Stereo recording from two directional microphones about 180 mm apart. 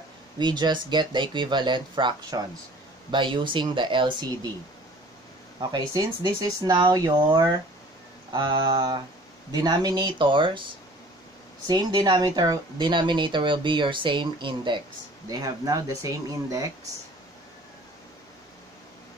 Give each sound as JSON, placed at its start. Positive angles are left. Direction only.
{"t": 0.4, "sound": "speech", "side_deg": -25}
{"t": 5.6, "sound": "speech", "side_deg": -20}
{"t": 11.6, "sound": "speech", "side_deg": -25}